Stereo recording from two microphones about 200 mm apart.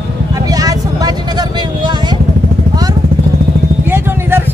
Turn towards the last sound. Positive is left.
turn(degrees=-10)  # may be behind; listen again after turning